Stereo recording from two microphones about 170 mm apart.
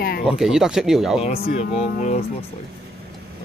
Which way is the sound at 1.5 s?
40° left (ahead or behind).